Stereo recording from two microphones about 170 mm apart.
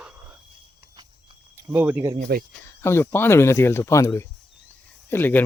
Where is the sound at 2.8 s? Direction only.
15° left (ahead or behind).